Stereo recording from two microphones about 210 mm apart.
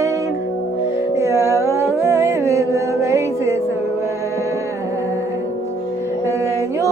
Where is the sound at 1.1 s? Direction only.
15° right (ahead or behind).